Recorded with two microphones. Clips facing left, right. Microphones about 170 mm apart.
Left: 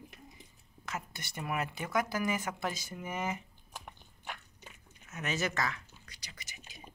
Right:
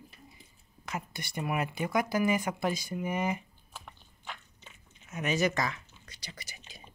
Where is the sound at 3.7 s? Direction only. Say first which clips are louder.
Left 1 dB; 15° left (ahead or behind).